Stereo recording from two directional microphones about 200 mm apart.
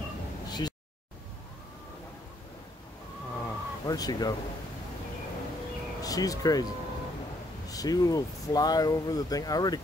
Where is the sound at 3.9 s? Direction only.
20° left (ahead or behind).